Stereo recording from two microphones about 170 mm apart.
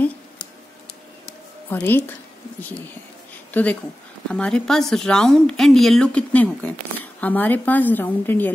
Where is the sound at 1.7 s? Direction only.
10° left (ahead or behind).